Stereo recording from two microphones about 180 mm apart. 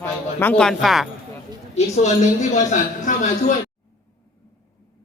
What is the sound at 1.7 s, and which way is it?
A woman's voice, 40° left (ahead or behind).